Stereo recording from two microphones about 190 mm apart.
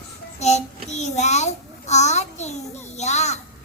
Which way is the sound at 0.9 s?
35° left (ahead or behind).